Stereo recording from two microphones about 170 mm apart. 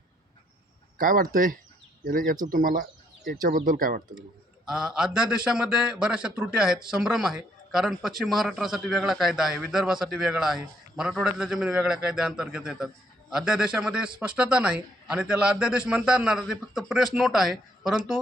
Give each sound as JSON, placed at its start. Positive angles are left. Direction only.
{"t": 0.9, "sound": "speech", "side_deg": -55}
{"t": 4.6, "sound": "a man's voice", "side_deg": 0}